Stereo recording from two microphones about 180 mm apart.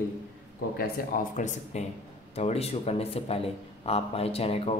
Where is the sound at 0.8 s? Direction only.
45° left (ahead or behind).